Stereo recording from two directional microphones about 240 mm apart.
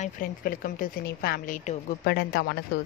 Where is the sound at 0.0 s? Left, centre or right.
Left.